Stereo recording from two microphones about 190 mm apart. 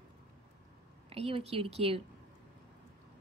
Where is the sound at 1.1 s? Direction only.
30° right (ahead or behind).